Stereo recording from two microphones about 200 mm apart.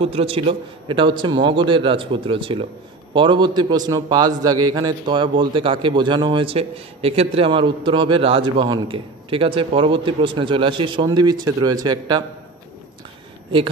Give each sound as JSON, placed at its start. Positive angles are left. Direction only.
{"t": 0.0, "sound": "a man's voice", "side_deg": -30}